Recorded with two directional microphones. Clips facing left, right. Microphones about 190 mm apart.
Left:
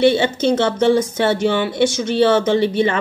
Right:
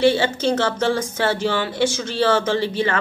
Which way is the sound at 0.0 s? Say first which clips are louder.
Left 3 dB; 20° left (ahead or behind).